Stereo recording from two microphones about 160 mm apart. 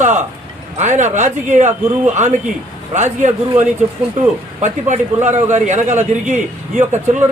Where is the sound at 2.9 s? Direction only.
45° right (ahead or behind).